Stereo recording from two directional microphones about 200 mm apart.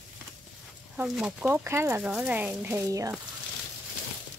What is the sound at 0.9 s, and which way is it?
Speech, 5° right (ahead or behind).